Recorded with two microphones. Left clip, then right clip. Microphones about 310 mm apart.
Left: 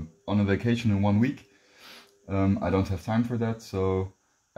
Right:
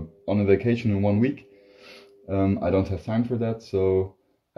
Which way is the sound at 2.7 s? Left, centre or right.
Left.